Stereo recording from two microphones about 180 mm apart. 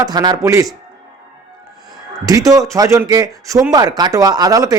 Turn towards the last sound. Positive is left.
turn(degrees=-20)  # may be behind; listen again after turning